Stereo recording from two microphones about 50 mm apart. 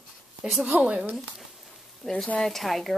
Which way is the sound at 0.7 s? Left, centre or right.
Right.